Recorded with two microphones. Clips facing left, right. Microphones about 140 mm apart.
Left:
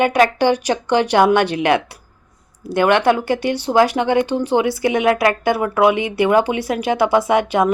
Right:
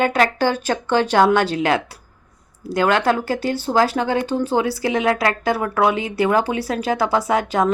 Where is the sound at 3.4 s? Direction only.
40° right (ahead or behind).